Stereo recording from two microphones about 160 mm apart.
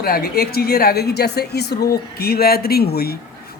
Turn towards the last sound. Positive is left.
turn(degrees=75)  # may be behind; listen again after turning